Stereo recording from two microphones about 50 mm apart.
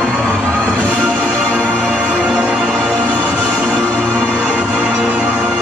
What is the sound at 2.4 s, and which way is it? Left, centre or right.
Music, right.